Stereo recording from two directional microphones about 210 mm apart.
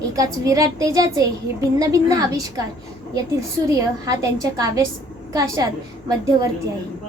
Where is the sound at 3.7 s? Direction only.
15° right (ahead or behind).